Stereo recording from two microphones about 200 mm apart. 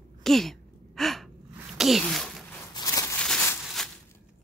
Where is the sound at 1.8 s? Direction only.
Centre (ahead or behind).